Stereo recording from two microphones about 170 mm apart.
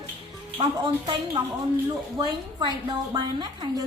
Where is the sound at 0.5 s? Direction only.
30° right (ahead or behind).